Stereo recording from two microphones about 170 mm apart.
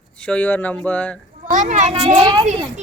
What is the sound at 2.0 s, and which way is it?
Speech, 25° right (ahead or behind).